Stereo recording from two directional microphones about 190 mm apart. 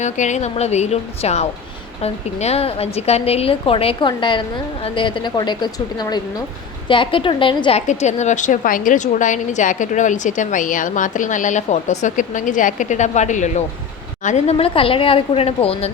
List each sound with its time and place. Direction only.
0.0 s a woman's voice: 40° left (ahead or behind)